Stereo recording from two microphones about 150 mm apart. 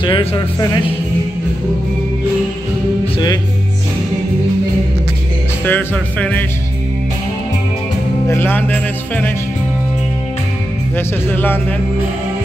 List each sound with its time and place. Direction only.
0.0 s music: 35° left (ahead or behind)
5.7 s music: 10° left (ahead or behind)
8.3 s music: 15° left (ahead or behind)
11.0 s music: 15° left (ahead or behind)